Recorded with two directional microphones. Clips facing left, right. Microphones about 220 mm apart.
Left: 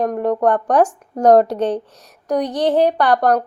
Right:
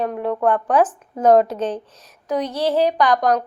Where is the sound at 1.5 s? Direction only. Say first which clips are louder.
Left 4 dB; 15° left (ahead or behind).